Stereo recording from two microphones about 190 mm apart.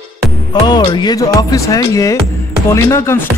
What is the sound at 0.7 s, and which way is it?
Speech, 20° left (ahead or behind).